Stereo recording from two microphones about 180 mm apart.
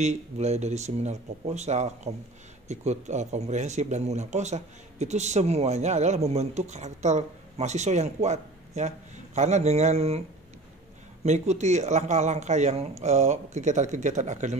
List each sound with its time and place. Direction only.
0.0 s speech: 40° right (ahead or behind)
11.2 s speech: 40° right (ahead or behind)